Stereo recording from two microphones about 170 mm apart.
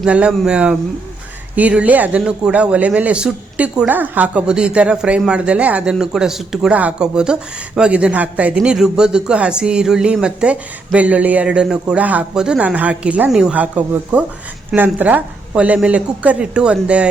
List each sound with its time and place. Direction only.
0.0 s speech: 5° right (ahead or behind)